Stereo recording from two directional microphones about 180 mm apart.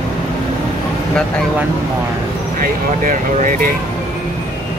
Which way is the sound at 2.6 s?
50° right (ahead or behind).